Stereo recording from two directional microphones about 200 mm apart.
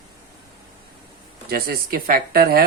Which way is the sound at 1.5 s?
50° right (ahead or behind).